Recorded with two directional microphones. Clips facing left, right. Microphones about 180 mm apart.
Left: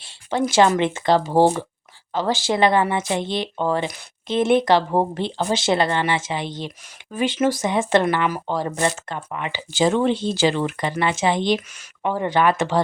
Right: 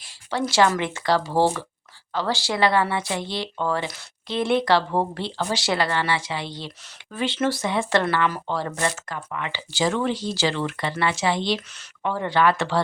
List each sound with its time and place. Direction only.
0.0 s speech: 20° left (ahead or behind)